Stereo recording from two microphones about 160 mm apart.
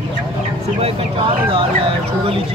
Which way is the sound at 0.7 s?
35° right (ahead or behind).